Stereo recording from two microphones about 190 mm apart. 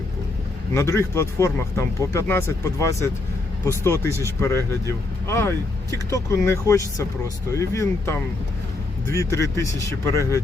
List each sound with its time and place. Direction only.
0.7 s speech: 15° left (ahead or behind)
9.1 s speech: 15° left (ahead or behind)